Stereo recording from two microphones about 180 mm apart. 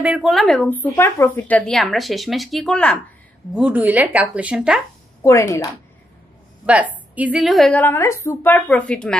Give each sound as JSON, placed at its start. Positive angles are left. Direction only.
{"t": 0.0, "sound": "speech", "side_deg": -5}
{"t": 3.5, "sound": "speech", "side_deg": -10}
{"t": 5.2, "sound": "a woman's voice", "side_deg": 15}
{"t": 6.6, "sound": "a woman's voice", "side_deg": -10}